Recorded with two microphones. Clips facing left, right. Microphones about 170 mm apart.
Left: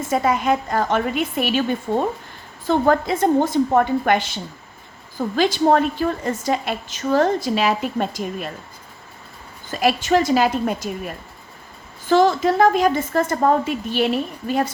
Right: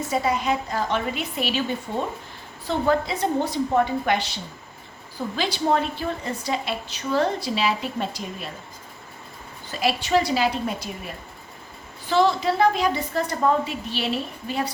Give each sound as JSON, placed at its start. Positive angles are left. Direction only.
{"t": 0.1, "sound": "a woman's voice", "side_deg": 50}
{"t": 9.8, "sound": "a woman's voice", "side_deg": 50}